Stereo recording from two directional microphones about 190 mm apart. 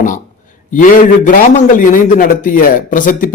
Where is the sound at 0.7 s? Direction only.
45° left (ahead or behind).